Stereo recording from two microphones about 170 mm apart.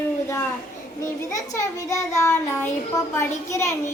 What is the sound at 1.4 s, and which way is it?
A child's voice, 20° left (ahead or behind).